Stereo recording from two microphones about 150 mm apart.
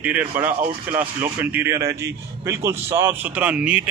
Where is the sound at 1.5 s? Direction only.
15° right (ahead or behind).